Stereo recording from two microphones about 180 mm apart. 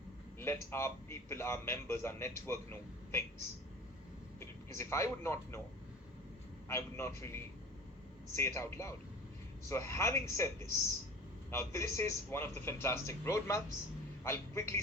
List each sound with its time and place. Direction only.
0.3 s a man's voice: 15° left (ahead or behind)
4.4 s a man's voice: 15° left (ahead or behind)
6.7 s a man's voice: 15° left (ahead or behind)
11.5 s a man's voice: 15° left (ahead or behind)